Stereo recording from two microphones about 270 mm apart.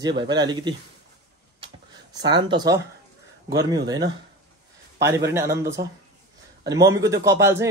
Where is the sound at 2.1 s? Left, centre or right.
Centre.